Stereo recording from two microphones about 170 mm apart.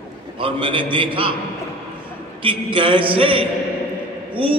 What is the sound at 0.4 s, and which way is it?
Speech, 30° right (ahead or behind).